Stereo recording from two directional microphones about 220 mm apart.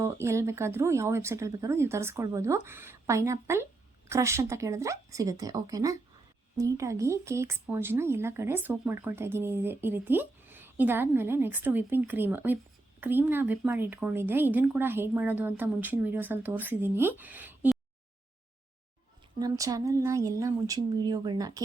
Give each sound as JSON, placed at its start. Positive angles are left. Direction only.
{"t": 0.0, "sound": "speech", "side_deg": -10}
{"t": 19.4, "sound": "speech", "side_deg": -15}